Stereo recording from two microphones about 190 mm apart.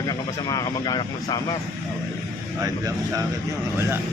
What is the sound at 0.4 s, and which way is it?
Speech, 20° left (ahead or behind).